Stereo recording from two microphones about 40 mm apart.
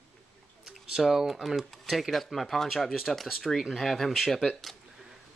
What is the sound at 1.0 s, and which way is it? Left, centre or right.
Speech, centre.